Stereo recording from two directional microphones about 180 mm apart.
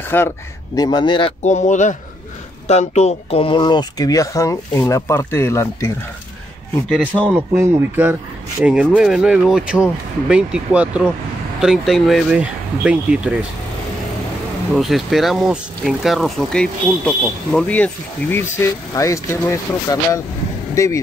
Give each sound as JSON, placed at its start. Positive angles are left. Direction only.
{"t": 0.1, "sound": "a man's voice", "side_deg": 10}
{"t": 0.7, "sound": "speech", "side_deg": 25}
{"t": 1.4, "sound": "speech", "side_deg": 40}
{"t": 6.9, "sound": "speech", "side_deg": -10}
{"t": 14.7, "sound": "speech", "side_deg": 0}